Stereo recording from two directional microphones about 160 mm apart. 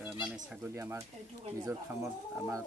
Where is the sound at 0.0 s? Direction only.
5° right (ahead or behind).